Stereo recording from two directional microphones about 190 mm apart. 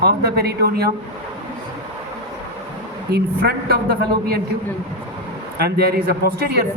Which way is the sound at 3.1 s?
55° right (ahead or behind).